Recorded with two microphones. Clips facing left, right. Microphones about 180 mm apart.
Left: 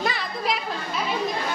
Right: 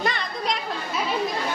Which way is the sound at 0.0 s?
5° left (ahead or behind).